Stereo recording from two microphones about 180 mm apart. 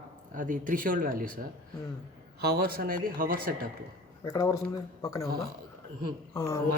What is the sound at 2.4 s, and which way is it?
Speech, 60° right (ahead or behind).